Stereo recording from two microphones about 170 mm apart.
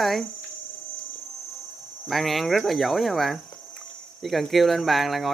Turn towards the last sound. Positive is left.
turn(degrees=0)  # may be behind; listen again after turning